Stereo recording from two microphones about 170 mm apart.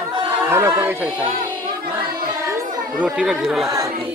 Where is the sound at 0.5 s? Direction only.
15° right (ahead or behind).